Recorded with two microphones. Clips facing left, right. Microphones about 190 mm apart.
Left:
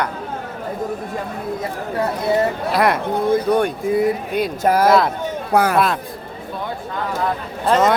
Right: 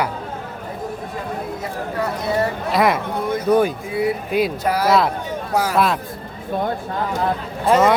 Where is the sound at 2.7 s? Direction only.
Centre (ahead or behind).